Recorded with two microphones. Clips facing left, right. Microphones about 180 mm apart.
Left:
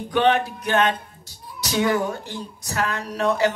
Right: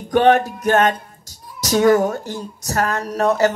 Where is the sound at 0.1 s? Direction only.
45° right (ahead or behind).